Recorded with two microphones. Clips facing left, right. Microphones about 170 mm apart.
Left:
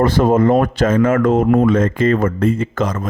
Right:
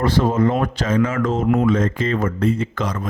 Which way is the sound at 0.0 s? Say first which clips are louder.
Left 4 dB; 50° left (ahead or behind).